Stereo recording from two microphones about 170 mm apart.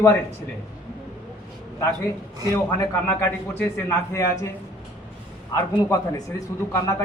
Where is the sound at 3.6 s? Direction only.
15° left (ahead or behind).